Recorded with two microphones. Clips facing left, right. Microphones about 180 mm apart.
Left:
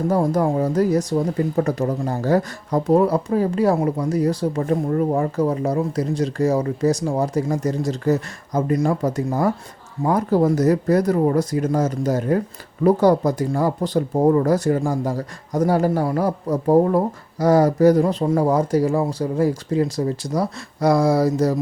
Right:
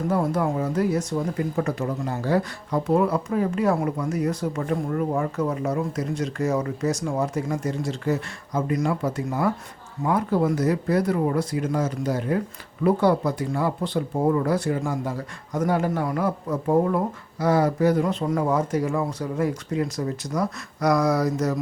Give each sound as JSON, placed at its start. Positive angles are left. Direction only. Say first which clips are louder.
{"t": 0.1, "sound": "speech", "louder": "left 4 dB", "side_deg": 40}